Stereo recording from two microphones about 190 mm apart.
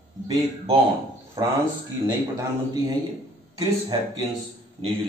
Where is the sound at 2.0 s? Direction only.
20° right (ahead or behind).